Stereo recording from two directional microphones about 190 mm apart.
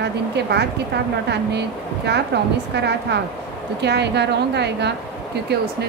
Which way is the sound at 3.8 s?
60° right (ahead or behind).